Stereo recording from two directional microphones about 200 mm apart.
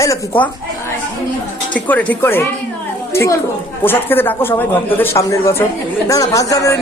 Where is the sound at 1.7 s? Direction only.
5° left (ahead or behind).